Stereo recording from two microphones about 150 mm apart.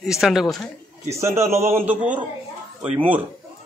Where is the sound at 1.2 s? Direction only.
15° right (ahead or behind).